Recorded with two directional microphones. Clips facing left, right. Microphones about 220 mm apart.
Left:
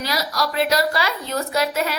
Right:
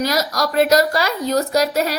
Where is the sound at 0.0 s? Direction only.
45° right (ahead or behind).